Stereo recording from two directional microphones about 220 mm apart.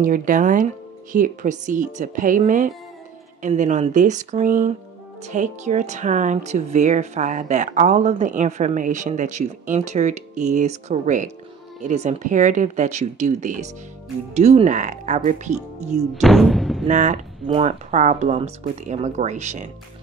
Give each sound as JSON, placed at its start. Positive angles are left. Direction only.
{"t": 0.0, "sound": "a woman's voice", "side_deg": -40}
{"t": 16.2, "sound": "speech", "side_deg": 0}
{"t": 16.8, "sound": "a woman's voice", "side_deg": -35}